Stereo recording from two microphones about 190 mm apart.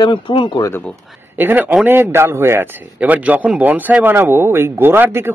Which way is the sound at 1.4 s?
10° right (ahead or behind).